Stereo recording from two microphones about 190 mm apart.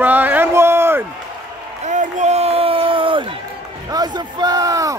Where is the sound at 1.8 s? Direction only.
40° right (ahead or behind).